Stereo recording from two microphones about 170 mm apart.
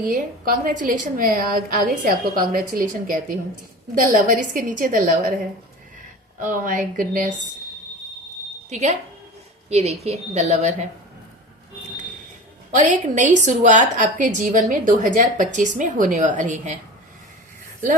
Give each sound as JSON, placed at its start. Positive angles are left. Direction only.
{"t": 0.0, "sound": "a woman's voice", "side_deg": -55}
{"t": 6.4, "sound": "a woman's voice", "side_deg": -50}
{"t": 8.7, "sound": "a woman's voice", "side_deg": -45}
{"t": 12.7, "sound": "a woman's voice", "side_deg": -45}